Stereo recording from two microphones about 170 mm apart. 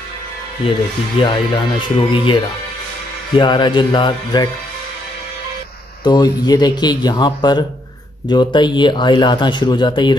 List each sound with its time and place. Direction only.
1.2 s speech: 30° left (ahead or behind)
6.0 s speech: 25° left (ahead or behind)